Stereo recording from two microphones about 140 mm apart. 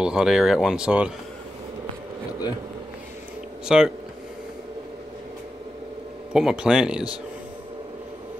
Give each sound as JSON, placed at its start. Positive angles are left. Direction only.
{"t": 0.0, "sound": "speech", "side_deg": -5}
{"t": 3.6, "sound": "speech", "side_deg": -5}
{"t": 6.3, "sound": "speech", "side_deg": -5}